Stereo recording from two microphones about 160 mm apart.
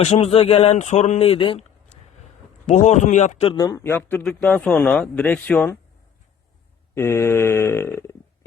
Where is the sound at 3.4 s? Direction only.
30° left (ahead or behind).